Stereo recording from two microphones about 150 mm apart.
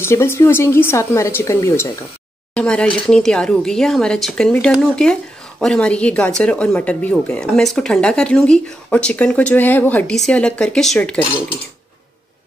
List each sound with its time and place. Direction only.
0.0 s speech: 15° left (ahead or behind)
2.5 s speech: 5° left (ahead or behind)